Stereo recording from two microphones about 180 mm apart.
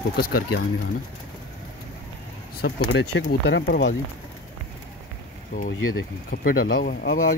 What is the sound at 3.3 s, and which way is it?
Speech, 70° left (ahead or behind).